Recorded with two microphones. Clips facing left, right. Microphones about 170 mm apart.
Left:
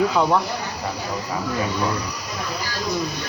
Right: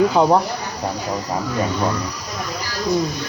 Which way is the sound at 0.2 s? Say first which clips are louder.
Right 5 dB; 35° right (ahead or behind).